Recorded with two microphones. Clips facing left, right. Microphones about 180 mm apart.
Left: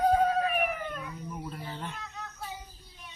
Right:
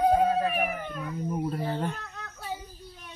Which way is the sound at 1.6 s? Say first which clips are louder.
Right 9 dB; 50° right (ahead or behind).